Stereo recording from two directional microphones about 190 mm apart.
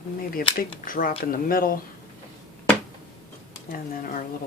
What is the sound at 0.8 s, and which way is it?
Speech, 50° left (ahead or behind).